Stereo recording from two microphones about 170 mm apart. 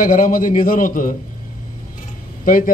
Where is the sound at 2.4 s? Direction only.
55° left (ahead or behind).